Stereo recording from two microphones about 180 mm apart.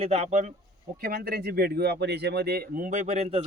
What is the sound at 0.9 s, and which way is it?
Speech, 55° right (ahead or behind).